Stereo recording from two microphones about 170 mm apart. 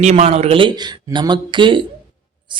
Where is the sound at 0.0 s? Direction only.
40° right (ahead or behind).